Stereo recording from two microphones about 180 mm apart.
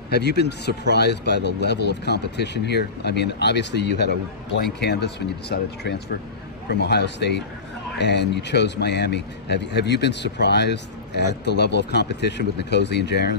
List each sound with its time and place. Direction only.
0.1 s speech: 65° left (ahead or behind)